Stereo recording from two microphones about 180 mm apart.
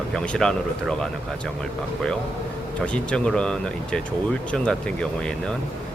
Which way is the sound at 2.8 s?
5° left (ahead or behind).